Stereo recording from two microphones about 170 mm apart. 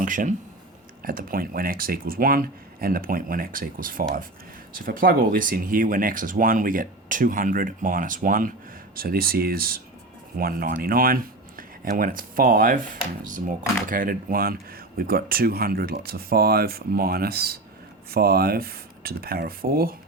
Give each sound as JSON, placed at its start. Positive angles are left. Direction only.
{"t": 0.0, "sound": "speech", "side_deg": -50}